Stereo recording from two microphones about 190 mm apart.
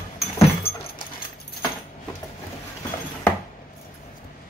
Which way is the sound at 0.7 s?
55° left (ahead or behind).